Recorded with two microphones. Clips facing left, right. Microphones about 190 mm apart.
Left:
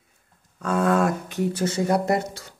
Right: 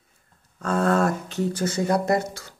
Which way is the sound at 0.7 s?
10° left (ahead or behind).